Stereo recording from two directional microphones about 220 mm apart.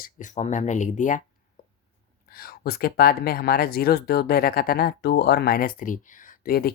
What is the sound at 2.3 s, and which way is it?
Speech, 45° left (ahead or behind).